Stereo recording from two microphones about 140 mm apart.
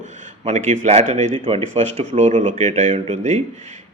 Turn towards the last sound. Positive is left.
turn(degrees=-55)  # may be behind; listen again after turning